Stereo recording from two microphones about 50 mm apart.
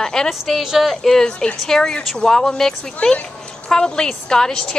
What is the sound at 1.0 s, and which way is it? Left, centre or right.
A woman's voice, centre.